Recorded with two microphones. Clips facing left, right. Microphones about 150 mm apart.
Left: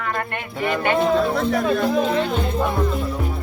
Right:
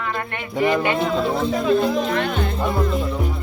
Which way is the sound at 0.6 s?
15° right (ahead or behind).